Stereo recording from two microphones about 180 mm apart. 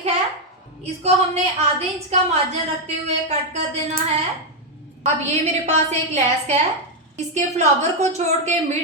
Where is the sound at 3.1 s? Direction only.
35° right (ahead or behind).